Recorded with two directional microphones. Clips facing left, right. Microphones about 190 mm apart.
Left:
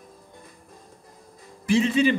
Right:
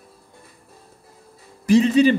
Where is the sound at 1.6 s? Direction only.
40° right (ahead or behind).